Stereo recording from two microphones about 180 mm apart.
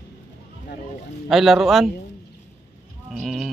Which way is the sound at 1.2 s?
Centre (ahead or behind).